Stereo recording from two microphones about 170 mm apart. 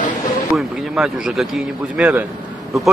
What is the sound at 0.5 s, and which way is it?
Speech, 5° right (ahead or behind).